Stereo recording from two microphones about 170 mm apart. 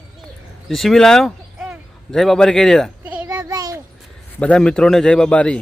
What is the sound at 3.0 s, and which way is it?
Children playing, 10° right (ahead or behind).